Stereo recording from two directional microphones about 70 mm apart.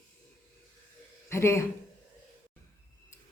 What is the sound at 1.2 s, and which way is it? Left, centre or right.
Speech, left.